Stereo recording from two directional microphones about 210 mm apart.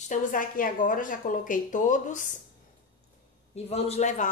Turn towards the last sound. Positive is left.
turn(degrees=35)  # may be behind; listen again after turning